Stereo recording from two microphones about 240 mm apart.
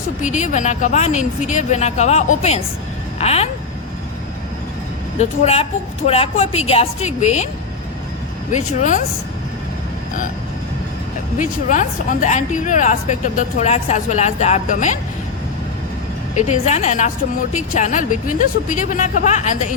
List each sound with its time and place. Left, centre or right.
0.2 s speech: left
5.2 s speech: left
8.5 s speech: left
11.3 s speech: left
16.4 s speech: left